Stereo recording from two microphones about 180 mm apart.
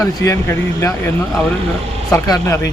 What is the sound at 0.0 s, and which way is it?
A man's voice, 15° left (ahead or behind).